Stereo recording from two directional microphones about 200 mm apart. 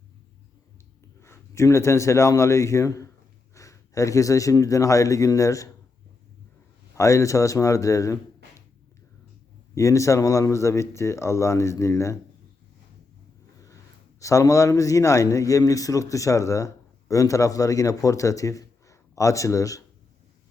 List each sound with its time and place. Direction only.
1.2 s a man's voice: 15° left (ahead or behind)
6.9 s a man's voice: 15° left (ahead or behind)
9.7 s a man's voice: 15° left (ahead or behind)
14.2 s a man's voice: 15° left (ahead or behind)